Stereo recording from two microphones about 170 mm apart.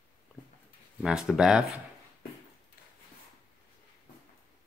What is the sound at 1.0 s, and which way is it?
Speech, 5° right (ahead or behind).